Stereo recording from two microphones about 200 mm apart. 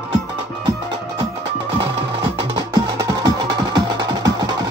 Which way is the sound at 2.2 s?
25° right (ahead or behind).